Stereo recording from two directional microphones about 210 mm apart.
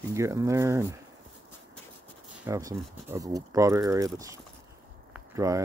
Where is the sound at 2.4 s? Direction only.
15° right (ahead or behind).